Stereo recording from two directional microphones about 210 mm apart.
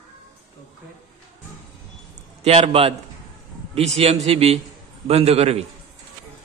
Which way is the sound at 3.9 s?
30° right (ahead or behind).